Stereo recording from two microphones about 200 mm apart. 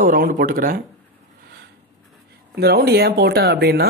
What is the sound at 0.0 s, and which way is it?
Speech, 45° right (ahead or behind).